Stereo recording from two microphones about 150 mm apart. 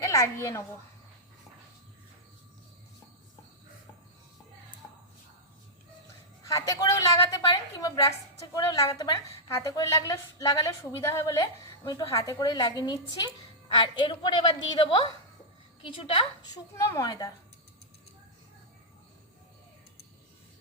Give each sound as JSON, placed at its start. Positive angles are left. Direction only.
{"t": 0.0, "sound": "a woman's voice", "side_deg": 20}
{"t": 6.5, "sound": "a woman's voice", "side_deg": 25}
{"t": 16.7, "sound": "a woman's voice", "side_deg": 20}